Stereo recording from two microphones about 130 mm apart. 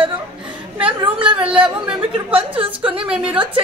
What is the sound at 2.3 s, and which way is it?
Speech, 45° right (ahead or behind).